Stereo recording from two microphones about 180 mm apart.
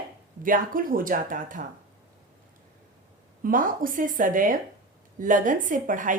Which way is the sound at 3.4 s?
50° right (ahead or behind).